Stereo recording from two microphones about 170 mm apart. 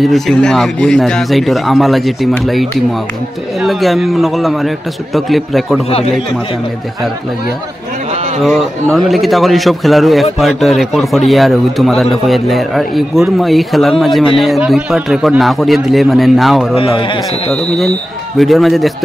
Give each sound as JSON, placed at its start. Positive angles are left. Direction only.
{"t": 0.0, "sound": "a man's voice", "side_deg": 0}
{"t": 3.6, "sound": "a man's voice", "side_deg": 0}
{"t": 8.4, "sound": "a man's voice", "side_deg": 0}
{"t": 16.7, "sound": "speech", "side_deg": 35}
{"t": 18.4, "sound": "a man's voice", "side_deg": 0}